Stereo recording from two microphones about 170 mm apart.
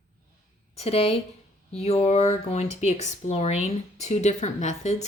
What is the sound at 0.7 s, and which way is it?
Speech, 35° left (ahead or behind).